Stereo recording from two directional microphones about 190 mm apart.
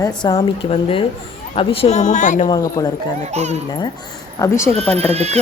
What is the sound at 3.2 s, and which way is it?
Speech, 35° right (ahead or behind).